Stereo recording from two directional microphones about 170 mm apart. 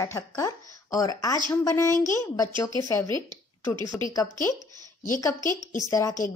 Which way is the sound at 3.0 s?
25° right (ahead or behind).